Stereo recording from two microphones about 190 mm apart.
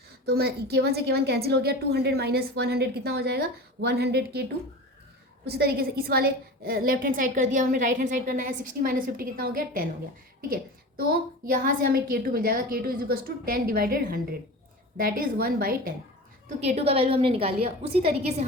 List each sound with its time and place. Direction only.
0.3 s a woman's voice: 55° right (ahead or behind)
5.5 s a woman's voice: 55° right (ahead or behind)
11.4 s a woman's voice: 50° right (ahead or behind)
16.6 s a woman's voice: 35° right (ahead or behind)